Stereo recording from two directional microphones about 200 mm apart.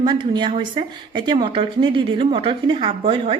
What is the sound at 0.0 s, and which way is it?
Speech, 25° right (ahead or behind).